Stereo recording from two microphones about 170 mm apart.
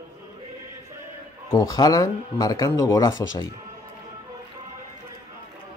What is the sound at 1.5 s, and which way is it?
Speech, 20° left (ahead or behind).